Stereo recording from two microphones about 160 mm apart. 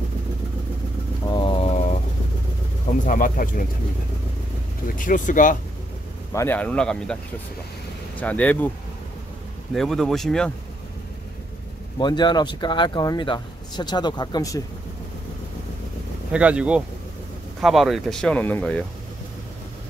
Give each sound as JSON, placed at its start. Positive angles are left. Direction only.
{"t": 1.2, "sound": "a sound", "side_deg": 30}
{"t": 3.1, "sound": "speech", "side_deg": 60}
{"t": 4.8, "sound": "speech", "side_deg": 55}
{"t": 6.3, "sound": "speech", "side_deg": 15}
{"t": 8.2, "sound": "speech", "side_deg": 10}
{"t": 9.8, "sound": "speech", "side_deg": 0}
{"t": 12.0, "sound": "speech", "side_deg": 30}
{"t": 16.3, "sound": "speech", "side_deg": -5}